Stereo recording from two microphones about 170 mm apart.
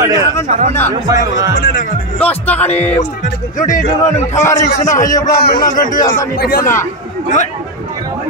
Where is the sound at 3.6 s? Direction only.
50° left (ahead or behind).